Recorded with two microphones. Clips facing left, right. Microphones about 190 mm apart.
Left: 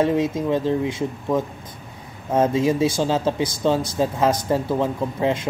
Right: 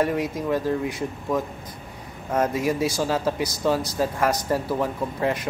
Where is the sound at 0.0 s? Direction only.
25° left (ahead or behind).